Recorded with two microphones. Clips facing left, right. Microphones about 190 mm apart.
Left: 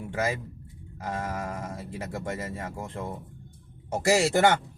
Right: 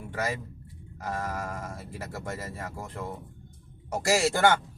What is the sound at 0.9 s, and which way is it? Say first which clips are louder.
Speech: left 1 dB; 20° left (ahead or behind).